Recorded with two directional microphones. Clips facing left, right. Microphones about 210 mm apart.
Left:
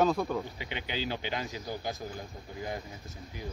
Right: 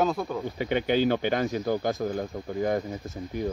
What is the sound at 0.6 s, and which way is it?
Speech, 50° right (ahead or behind).